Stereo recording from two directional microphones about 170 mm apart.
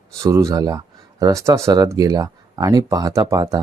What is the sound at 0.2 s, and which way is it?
Speech, 20° right (ahead or behind).